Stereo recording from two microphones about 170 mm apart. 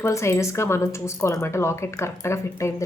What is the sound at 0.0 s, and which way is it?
Speech, 15° left (ahead or behind).